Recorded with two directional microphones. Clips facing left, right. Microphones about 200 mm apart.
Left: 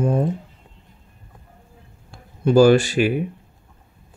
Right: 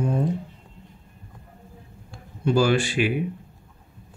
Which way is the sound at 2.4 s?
40° left (ahead or behind).